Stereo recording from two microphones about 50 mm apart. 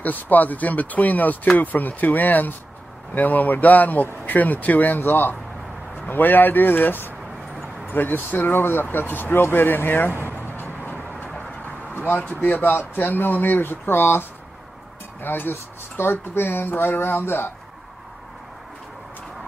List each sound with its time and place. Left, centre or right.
0.0 s speech: left
10.1 s a sound: right
10.4 s vehicle: left
12.1 s speech: left
15.2 s speech: left